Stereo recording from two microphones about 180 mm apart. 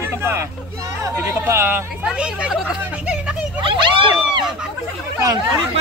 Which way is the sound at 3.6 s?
30° right (ahead or behind).